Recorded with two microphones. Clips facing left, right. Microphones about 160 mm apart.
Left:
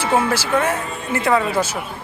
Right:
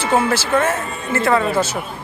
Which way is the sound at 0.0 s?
10° left (ahead or behind).